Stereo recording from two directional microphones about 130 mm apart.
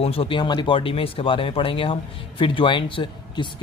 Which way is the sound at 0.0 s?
45° left (ahead or behind).